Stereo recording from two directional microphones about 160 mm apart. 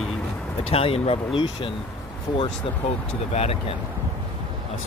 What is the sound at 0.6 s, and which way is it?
Speech, 35° left (ahead or behind).